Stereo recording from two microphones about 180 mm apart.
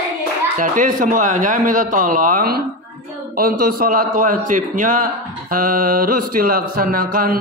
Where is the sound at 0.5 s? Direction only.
45° right (ahead or behind).